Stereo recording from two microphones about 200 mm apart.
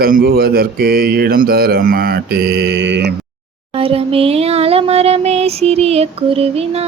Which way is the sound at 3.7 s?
30° right (ahead or behind).